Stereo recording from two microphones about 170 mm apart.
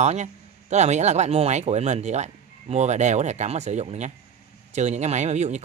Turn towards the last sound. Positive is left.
turn(degrees=-40)  # may be behind; listen again after turning